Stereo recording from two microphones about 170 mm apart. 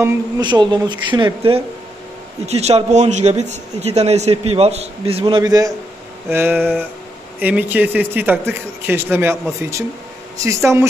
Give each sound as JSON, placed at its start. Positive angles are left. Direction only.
{"t": 0.4, "sound": "a man's voice", "side_deg": -25}
{"t": 5.2, "sound": "speech", "side_deg": -20}